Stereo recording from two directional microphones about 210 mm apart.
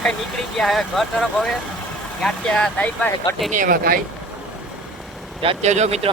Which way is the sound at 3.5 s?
40° right (ahead or behind).